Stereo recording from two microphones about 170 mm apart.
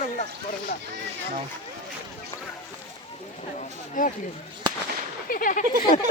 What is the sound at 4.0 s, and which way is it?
Speech, 50° left (ahead or behind).